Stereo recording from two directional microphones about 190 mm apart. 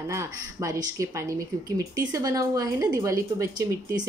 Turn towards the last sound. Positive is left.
turn(degrees=-20)  # may be behind; listen again after turning